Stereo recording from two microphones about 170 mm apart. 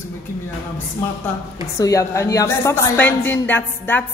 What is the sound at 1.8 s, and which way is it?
A woman's voice, 20° left (ahead or behind).